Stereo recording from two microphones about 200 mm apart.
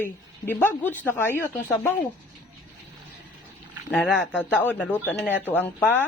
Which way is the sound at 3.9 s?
Centre (ahead or behind).